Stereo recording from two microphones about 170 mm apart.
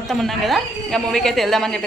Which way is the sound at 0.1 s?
Centre (ahead or behind).